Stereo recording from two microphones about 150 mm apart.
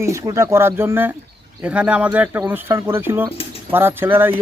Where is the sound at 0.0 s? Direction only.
20° right (ahead or behind).